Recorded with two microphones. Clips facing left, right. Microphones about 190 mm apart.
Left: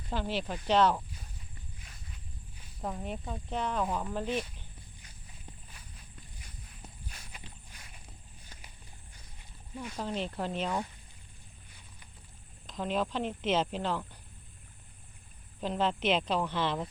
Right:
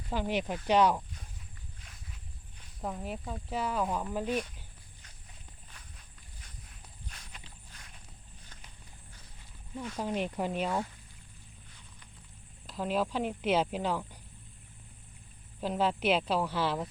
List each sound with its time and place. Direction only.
0.1 s speech: 15° right (ahead or behind)
1.8 s walk: centre (ahead or behind)
2.6 s speech: centre (ahead or behind)
7.1 s walk: 5° left (ahead or behind)
10.0 s speech: 10° right (ahead or behind)
12.6 s speech: 5° right (ahead or behind)
15.6 s speech: 5° right (ahead or behind)